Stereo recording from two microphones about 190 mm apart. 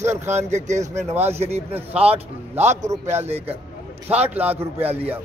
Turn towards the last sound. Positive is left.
turn(degrees=-10)  # may be behind; listen again after turning